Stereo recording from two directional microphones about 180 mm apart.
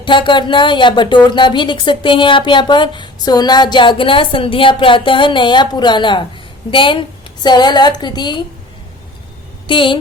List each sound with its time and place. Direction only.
0.0 s a woman's voice: 25° left (ahead or behind)
9.6 s a woman's voice: 25° left (ahead or behind)